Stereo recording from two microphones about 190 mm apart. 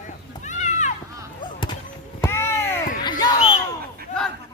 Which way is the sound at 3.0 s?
20° left (ahead or behind).